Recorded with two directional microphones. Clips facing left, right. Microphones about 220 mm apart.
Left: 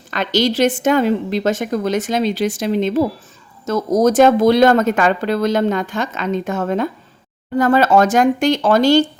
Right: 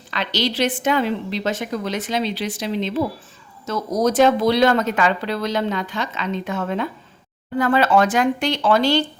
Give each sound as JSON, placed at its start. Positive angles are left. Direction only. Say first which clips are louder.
{"t": 0.1, "sound": "speech", "louder": "left 6 dB", "side_deg": 45}